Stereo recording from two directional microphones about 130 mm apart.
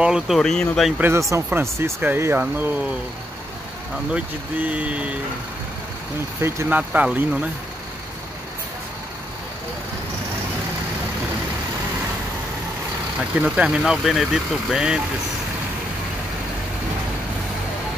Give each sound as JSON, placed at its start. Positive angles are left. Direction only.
{"t": 0.0, "sound": "speech", "side_deg": -5}
{"t": 0.9, "sound": "speech", "side_deg": -20}
{"t": 4.1, "sound": "speech", "side_deg": -10}
{"t": 6.4, "sound": "speech", "side_deg": -20}
{"t": 6.8, "sound": "speech", "side_deg": -10}
{"t": 13.4, "sound": "speech", "side_deg": -5}